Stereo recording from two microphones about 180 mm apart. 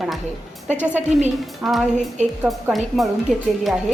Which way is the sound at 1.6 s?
Centre (ahead or behind).